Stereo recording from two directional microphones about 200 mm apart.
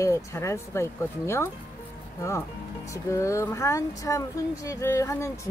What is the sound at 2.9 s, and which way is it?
Speech, 15° left (ahead or behind).